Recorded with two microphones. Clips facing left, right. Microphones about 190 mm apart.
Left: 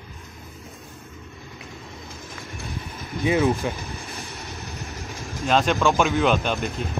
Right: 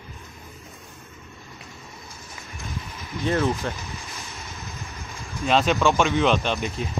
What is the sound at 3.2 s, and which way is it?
Speech, 15° left (ahead or behind).